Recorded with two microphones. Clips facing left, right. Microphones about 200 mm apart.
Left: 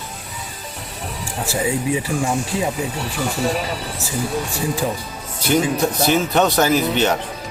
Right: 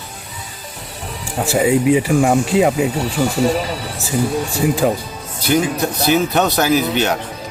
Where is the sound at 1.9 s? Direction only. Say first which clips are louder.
Right 7 dB; 70° right (ahead or behind).